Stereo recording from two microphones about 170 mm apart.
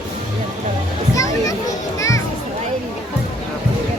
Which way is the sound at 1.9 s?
20° left (ahead or behind).